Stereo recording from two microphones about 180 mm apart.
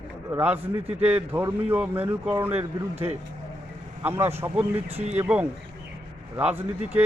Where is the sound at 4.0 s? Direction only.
10° right (ahead or behind).